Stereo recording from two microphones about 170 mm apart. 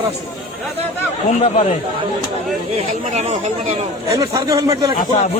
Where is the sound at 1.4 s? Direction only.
50° left (ahead or behind).